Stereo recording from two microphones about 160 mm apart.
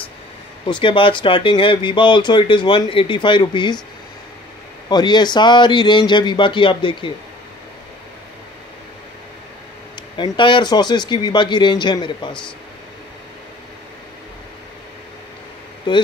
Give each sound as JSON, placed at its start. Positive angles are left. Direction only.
{"t": 0.7, "sound": "speech", "side_deg": 30}
{"t": 4.8, "sound": "speech", "side_deg": 25}
{"t": 10.1, "sound": "speech", "side_deg": 30}
{"t": 15.9, "sound": "speech", "side_deg": 30}